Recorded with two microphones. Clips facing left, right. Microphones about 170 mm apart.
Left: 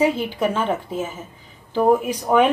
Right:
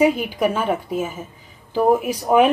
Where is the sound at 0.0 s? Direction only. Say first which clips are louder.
Right 2 dB; 15° right (ahead or behind).